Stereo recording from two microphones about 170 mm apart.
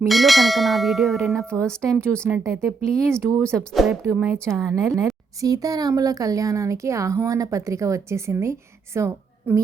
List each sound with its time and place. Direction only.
0.0 s bell: centre (ahead or behind)
2.2 s speech: 15° right (ahead or behind)
3.6 s bell: centre (ahead or behind)
4.1 s speech: 10° right (ahead or behind)